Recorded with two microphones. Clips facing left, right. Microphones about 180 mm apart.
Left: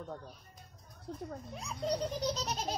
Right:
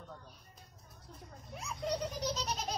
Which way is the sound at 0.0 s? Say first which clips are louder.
Left 7 dB; 45° left (ahead or behind).